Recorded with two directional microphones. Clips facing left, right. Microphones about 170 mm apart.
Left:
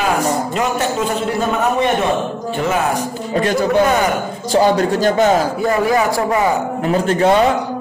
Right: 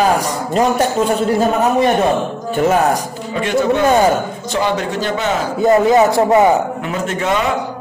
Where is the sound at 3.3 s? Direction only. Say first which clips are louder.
Left 1 dB; 40° left (ahead or behind).